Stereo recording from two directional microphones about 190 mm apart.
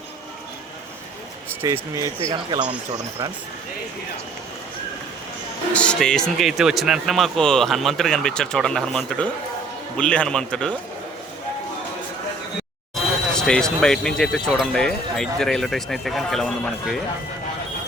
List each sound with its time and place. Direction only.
1.6 s speech: 15° right (ahead or behind)
5.7 s speech: 5° left (ahead or behind)
13.3 s speech: 5° left (ahead or behind)